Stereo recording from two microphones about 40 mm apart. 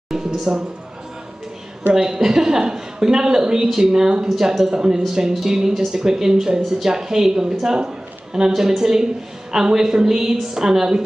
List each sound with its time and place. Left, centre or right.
0.5 s a man's voice: centre
2.0 s speech: centre